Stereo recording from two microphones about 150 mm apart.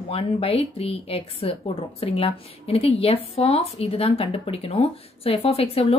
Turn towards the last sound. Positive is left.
turn(degrees=40)  # may be behind; listen again after turning